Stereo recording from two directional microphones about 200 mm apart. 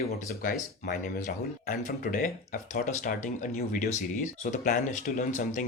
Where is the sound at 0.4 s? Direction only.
45° left (ahead or behind).